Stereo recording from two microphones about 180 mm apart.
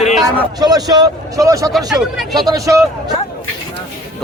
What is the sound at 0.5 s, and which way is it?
A man's voice, 20° right (ahead or behind).